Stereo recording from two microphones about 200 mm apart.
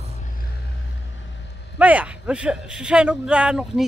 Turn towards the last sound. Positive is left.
turn(degrees=-5)  # may be behind; listen again after turning